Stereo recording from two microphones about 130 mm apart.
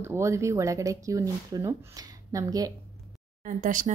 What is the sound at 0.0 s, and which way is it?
Speech, 20° right (ahead or behind).